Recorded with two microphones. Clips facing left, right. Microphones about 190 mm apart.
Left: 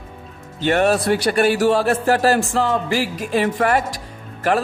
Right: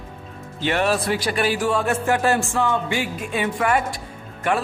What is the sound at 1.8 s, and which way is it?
Speech, 35° left (ahead or behind).